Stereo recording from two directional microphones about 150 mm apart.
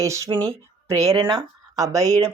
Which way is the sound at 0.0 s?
20° right (ahead or behind).